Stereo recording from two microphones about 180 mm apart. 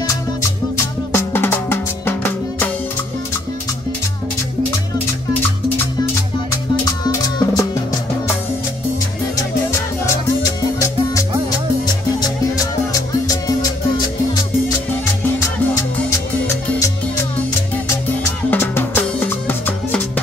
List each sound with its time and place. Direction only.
0.0 s music: 15° left (ahead or behind)
6.8 s music: 20° left (ahead or behind)
15.2 s music: 15° left (ahead or behind)
18.5 s music: 10° left (ahead or behind)